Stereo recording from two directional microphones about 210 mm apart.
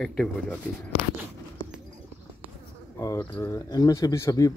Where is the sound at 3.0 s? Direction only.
15° left (ahead or behind).